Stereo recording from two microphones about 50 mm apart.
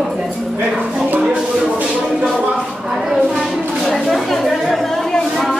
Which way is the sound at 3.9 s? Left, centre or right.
Centre.